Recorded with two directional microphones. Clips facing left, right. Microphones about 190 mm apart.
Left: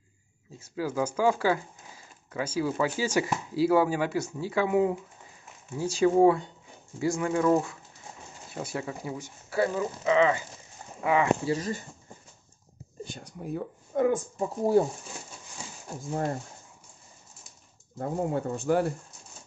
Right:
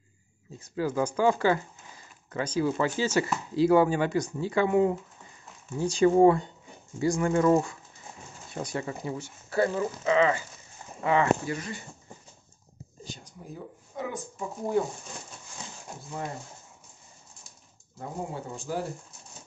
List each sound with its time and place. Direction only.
0.6 s speech: 5° left (ahead or behind)
11.4 s speech: 30° left (ahead or behind)
13.1 s speech: 65° left (ahead or behind)
15.6 s a sound: 10° left (ahead or behind)
16.0 s speech: 45° left (ahead or behind)
17.9 s speech: 55° left (ahead or behind)